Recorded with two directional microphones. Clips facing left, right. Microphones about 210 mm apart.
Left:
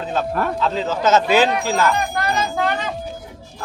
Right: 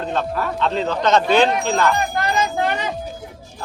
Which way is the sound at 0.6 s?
5° left (ahead or behind).